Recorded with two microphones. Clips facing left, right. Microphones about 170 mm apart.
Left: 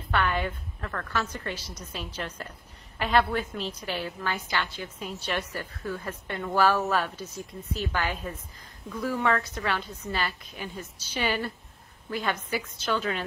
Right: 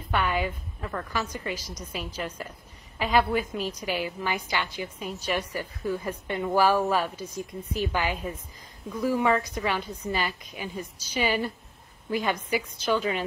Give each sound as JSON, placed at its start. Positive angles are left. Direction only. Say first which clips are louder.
{"t": 0.1, "sound": "a woman's voice", "louder": "right 1 dB", "side_deg": -10}
{"t": 7.3, "sound": "speech", "louder": "right 5 dB", "side_deg": -55}
{"t": 7.9, "sound": "a woman's voice", "louder": "right 2 dB", "side_deg": -15}